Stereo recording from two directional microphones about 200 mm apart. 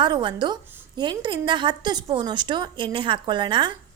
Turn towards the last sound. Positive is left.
turn(degrees=-25)  # may be behind; listen again after turning